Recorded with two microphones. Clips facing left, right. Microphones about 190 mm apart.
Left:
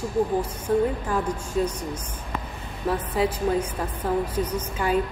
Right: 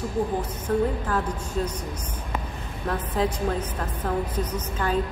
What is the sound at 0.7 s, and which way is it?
A woman's voice, 10° left (ahead or behind).